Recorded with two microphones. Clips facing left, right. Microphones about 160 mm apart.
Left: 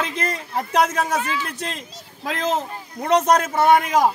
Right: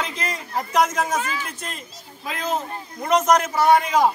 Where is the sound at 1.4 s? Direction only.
80° left.